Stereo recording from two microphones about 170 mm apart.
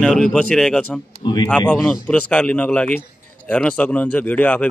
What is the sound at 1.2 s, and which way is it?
Speech, 25° left (ahead or behind).